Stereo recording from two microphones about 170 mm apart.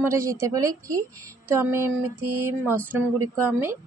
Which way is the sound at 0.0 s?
15° right (ahead or behind).